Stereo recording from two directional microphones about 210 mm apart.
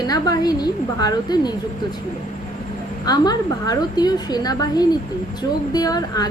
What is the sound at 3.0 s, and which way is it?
A woman's voice, 20° left (ahead or behind).